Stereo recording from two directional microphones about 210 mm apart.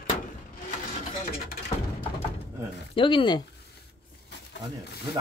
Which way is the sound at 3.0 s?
25° left (ahead or behind).